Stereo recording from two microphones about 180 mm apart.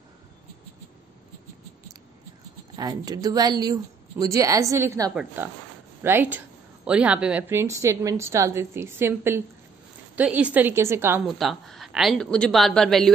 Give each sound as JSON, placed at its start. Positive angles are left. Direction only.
{"t": 2.7, "sound": "a woman's voice", "side_deg": -25}
{"t": 11.2, "sound": "speech", "side_deg": 0}